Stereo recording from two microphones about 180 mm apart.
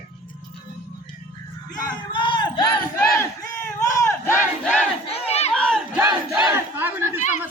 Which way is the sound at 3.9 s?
15° left (ahead or behind).